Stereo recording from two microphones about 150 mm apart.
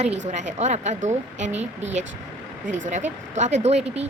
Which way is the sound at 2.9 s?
50° right (ahead or behind).